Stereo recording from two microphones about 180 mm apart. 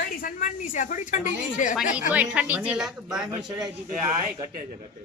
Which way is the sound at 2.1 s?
10° right (ahead or behind).